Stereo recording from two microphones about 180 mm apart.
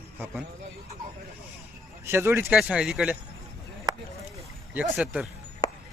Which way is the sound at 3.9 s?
25° right (ahead or behind).